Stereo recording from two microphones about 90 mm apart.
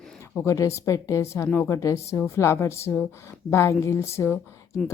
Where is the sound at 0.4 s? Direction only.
35° left (ahead or behind).